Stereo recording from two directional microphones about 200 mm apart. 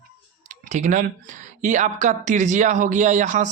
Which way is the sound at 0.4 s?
35° right (ahead or behind).